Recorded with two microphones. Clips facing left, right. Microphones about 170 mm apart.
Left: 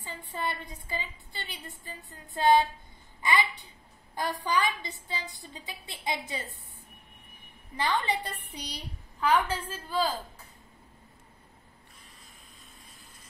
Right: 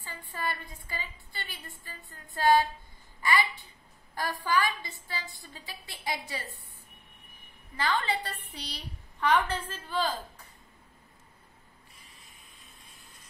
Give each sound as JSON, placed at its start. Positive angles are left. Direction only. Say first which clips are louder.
{"t": 0.3, "sound": "a woman's voice", "louder": "left 1 dB", "side_deg": 20}
{"t": 7.7, "sound": "a woman's voice", "louder": "left 1 dB", "side_deg": 20}
{"t": 9.2, "sound": "a woman's voice", "louder": "even", "side_deg": 10}